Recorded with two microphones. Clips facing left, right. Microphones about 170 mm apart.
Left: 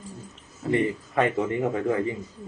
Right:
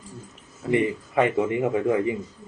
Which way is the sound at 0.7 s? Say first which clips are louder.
Right 2 dB; 10° right (ahead or behind).